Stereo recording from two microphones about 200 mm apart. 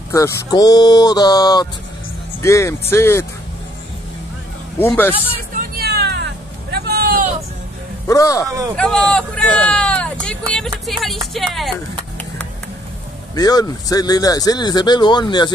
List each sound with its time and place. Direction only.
0.1 s speech: 20° left (ahead or behind)
4.7 s speech: 10° left (ahead or behind)
5.8 s vehicle: 50° right (ahead or behind)
8.1 s speech: 15° left (ahead or behind)
8.7 s speech: 5° left (ahead or behind)
13.3 s speech: 20° left (ahead or behind)